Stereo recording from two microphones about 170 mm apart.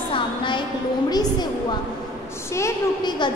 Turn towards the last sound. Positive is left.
turn(degrees=20)  # may be behind; listen again after turning